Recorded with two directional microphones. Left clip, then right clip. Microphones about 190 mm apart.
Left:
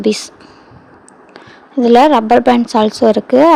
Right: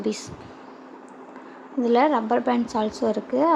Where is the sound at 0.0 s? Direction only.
40° left (ahead or behind).